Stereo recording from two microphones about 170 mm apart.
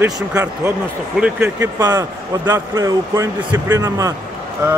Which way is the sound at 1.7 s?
20° right (ahead or behind).